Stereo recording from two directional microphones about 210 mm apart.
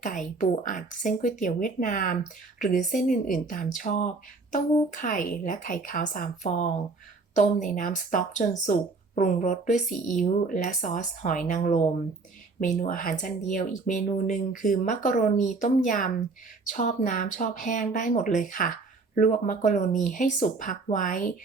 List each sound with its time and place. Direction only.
0.0 s speech: 40° left (ahead or behind)